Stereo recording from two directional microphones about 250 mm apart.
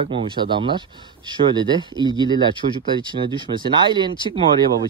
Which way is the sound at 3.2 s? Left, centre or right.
Centre.